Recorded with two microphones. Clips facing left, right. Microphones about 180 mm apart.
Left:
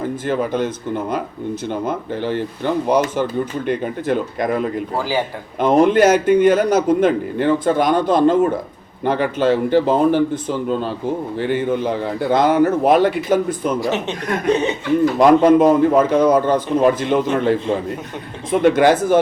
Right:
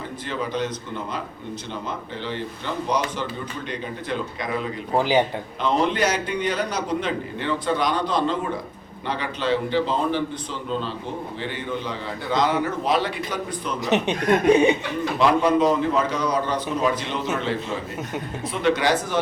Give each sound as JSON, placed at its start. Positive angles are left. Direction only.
{"t": 0.3, "sound": "a man's voice", "side_deg": 50}
{"t": 1.7, "sound": "a man's voice", "side_deg": 50}
{"t": 4.9, "sound": "a man's voice", "side_deg": -20}
{"t": 5.5, "sound": "a man's voice", "side_deg": 50}
{"t": 13.9, "sound": "speech", "side_deg": -15}
{"t": 15.2, "sound": "a man's voice", "side_deg": 50}
{"t": 18.6, "sound": "a man's voice", "side_deg": 50}